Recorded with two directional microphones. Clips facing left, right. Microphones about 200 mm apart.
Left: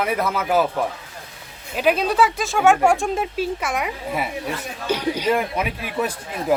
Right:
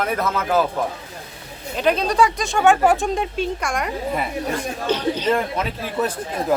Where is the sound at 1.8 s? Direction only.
5° left (ahead or behind).